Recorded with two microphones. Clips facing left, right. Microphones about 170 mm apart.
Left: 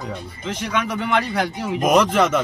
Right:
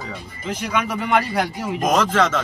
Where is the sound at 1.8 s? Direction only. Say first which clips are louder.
Left 2 dB; 15° left (ahead or behind).